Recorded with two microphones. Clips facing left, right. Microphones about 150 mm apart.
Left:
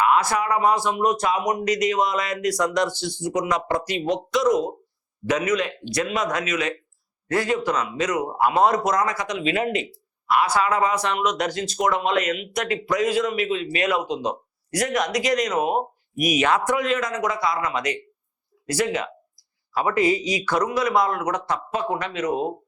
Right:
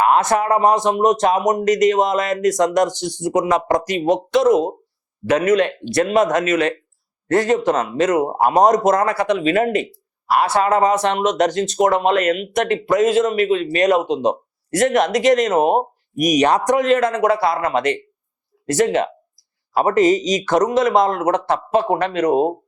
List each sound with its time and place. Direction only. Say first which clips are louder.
0.0 s speech: right 4 dB; 50° right (ahead or behind)
2.9 s speech: right 4 dB; 20° right (ahead or behind)
3.2 s speech: right 7 dB; 50° right (ahead or behind)
4.4 s speech: right 5 dB; 55° right (ahead or behind)
14.0 s a man's voice: right 6 dB; 20° right (ahead or behind)
14.8 s speech: right 8 dB; 50° right (ahead or behind)
21.1 s a man's voice: right 7 dB; 25° right (ahead or behind)
21.5 s speech: right 8 dB; 55° right (ahead or behind)